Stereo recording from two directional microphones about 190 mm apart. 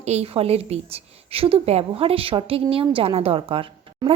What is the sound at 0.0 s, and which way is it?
A woman's voice, 35° right (ahead or behind).